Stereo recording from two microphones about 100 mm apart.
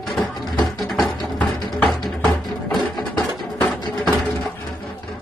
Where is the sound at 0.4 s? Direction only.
45° left (ahead or behind).